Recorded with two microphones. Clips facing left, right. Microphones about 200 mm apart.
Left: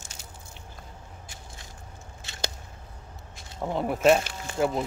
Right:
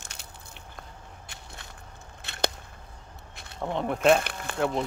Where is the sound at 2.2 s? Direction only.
60° right (ahead or behind).